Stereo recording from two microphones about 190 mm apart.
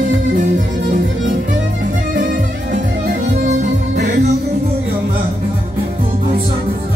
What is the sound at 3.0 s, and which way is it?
Music, 55° right (ahead or behind).